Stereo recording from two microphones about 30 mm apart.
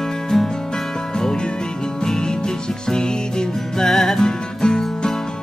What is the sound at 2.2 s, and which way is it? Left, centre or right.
Music, left.